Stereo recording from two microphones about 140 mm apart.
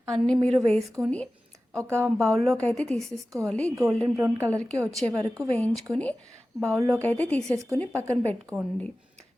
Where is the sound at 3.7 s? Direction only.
20° right (ahead or behind).